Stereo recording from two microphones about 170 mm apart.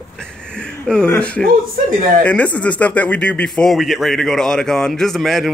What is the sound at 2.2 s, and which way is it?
Speech, 10° left (ahead or behind).